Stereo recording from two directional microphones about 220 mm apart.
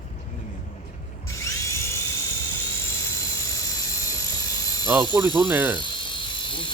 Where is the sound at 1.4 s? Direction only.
15° left (ahead or behind).